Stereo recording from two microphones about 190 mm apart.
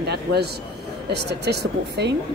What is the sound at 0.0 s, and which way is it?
A man's voice, 60° right (ahead or behind).